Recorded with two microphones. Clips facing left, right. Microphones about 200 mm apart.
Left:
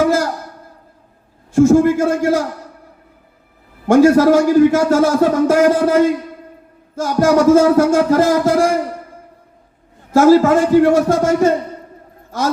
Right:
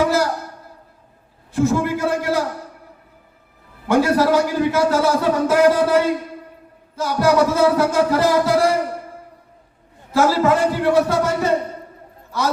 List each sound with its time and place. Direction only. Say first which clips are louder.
0.0 s a sound: left 3 dB; 50° left (ahead or behind)
1.5 s a man's voice: left 8 dB; 45° left (ahead or behind)
3.8 s a man's voice: left 7 dB; 45° left (ahead or behind)
10.1 s a man's voice: left 7 dB; 45° left (ahead or behind)